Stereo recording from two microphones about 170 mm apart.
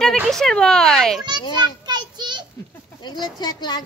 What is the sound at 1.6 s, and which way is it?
Child singing, 25° right (ahead or behind).